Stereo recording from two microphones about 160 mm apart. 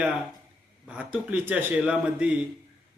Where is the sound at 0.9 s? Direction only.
10° right (ahead or behind).